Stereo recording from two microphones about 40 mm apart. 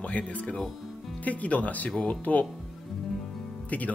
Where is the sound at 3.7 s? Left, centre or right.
Left.